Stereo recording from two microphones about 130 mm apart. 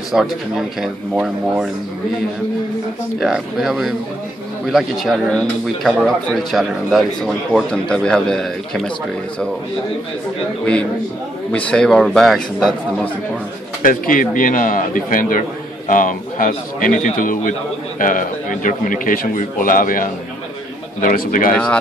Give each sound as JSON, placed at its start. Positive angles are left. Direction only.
{"t": 0.1, "sound": "speech", "side_deg": 0}
{"t": 3.2, "sound": "speech", "side_deg": -5}
{"t": 10.6, "sound": "speech", "side_deg": 10}
{"t": 13.8, "sound": "a man's voice", "side_deg": 90}